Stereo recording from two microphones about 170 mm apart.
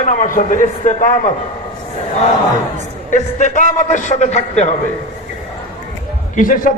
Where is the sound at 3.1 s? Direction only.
45° left (ahead or behind).